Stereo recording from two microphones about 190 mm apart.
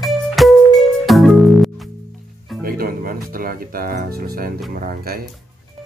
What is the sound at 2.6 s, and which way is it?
Music, 50° right (ahead or behind).